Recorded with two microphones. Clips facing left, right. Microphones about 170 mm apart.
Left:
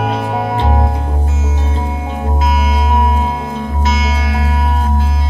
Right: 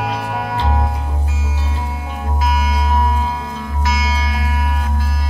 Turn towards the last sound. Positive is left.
turn(degrees=25)  # may be behind; listen again after turning